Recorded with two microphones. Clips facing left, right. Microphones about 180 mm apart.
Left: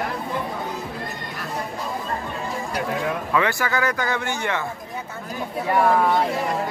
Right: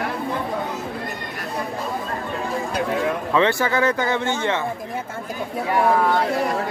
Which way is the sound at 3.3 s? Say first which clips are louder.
Right 4 dB; 25° right (ahead or behind).